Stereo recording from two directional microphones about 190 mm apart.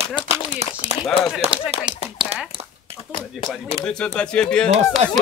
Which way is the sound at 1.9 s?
30° right (ahead or behind).